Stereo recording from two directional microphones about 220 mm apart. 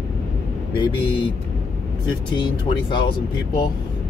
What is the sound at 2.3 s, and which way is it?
Speech, 20° left (ahead or behind).